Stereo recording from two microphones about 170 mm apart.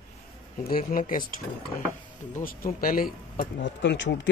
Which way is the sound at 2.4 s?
55° left (ahead or behind).